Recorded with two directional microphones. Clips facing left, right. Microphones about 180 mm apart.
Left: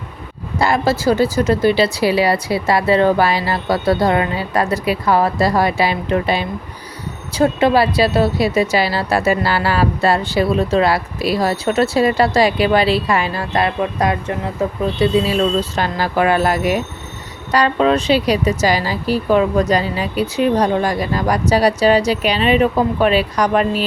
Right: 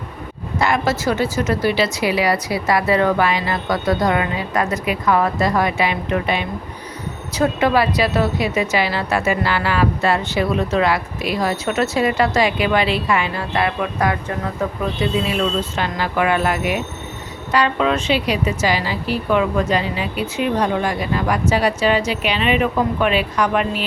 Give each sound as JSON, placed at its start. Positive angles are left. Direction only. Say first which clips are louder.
{"t": 0.6, "sound": "a woman's voice", "louder": "left 3 dB", "side_deg": 35}